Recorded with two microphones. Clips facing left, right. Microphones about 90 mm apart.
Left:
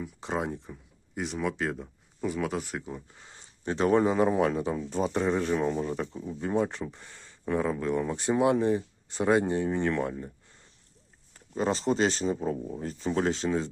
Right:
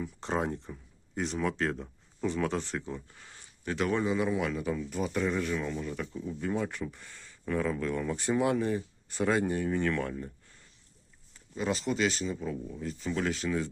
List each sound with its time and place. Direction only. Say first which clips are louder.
0.0 s speech: even; 5° left (ahead or behind); by 10.3 s 20° left (ahead or behind)
11.3 s speech: left 4 dB; 40° left (ahead or behind); by 13.7 s 25° left (ahead or behind)